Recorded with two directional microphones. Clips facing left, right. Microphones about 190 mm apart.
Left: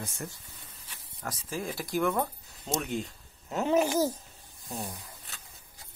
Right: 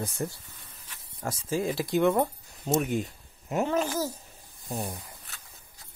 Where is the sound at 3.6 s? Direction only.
10° left (ahead or behind).